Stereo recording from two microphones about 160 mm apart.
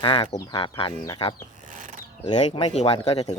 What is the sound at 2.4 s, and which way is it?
Speech, 30° left (ahead or behind).